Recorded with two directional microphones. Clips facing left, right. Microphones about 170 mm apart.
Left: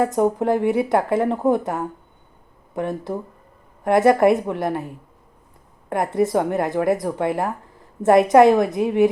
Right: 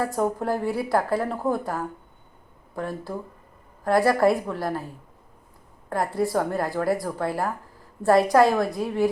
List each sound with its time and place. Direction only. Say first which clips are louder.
0.0 s speech: left 6 dB; 20° left (ahead or behind)
5.9 s speech: left 4 dB; 20° left (ahead or behind)